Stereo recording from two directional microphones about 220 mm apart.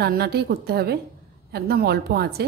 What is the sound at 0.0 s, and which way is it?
A woman's voice, 45° right (ahead or behind).